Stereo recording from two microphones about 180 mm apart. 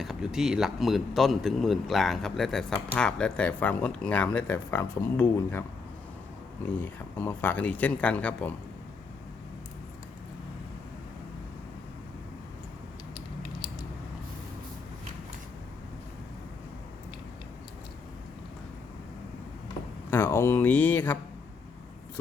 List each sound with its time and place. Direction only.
0.0 s speech: 5° right (ahead or behind)
13.6 s a sound: 25° left (ahead or behind)
20.1 s speech: 15° left (ahead or behind)